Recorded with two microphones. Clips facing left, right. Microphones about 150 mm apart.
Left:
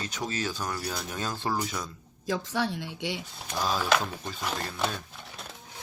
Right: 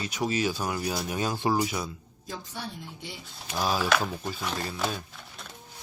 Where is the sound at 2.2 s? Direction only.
90° left.